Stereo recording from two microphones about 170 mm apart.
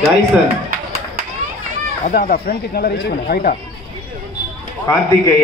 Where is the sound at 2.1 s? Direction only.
55° left (ahead or behind).